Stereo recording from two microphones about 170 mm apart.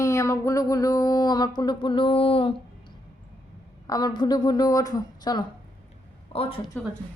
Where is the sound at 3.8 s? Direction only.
20° left (ahead or behind).